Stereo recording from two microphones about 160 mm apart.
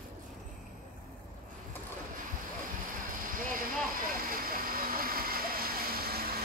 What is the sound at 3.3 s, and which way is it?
Vehicle, 60° right (ahead or behind).